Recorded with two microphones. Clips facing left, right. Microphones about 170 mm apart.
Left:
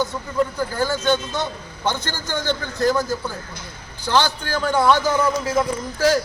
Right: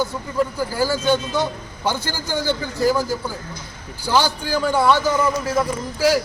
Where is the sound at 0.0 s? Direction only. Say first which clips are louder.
Even; 10° right (ahead or behind).